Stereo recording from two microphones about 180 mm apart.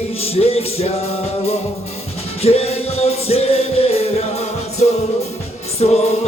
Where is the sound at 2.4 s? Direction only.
35° left (ahead or behind).